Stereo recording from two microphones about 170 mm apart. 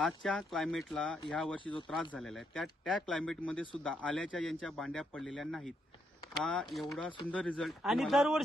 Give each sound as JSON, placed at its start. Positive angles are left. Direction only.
{"t": 0.0, "sound": "a man's voice", "side_deg": 5}
{"t": 1.6, "sound": "speech", "side_deg": 30}
{"t": 1.9, "sound": "a man's voice", "side_deg": 0}